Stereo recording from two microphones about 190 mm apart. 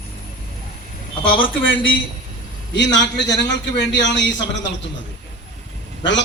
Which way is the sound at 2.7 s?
65° left (ahead or behind).